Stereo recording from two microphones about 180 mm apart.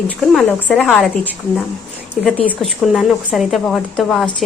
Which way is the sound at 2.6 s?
Centre (ahead or behind).